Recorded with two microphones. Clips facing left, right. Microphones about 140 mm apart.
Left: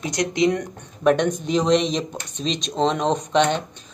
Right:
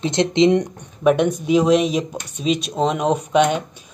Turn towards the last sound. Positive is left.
turn(degrees=-10)  # may be behind; listen again after turning